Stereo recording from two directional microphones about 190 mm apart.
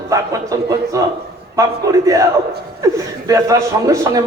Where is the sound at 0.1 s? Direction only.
15° right (ahead or behind).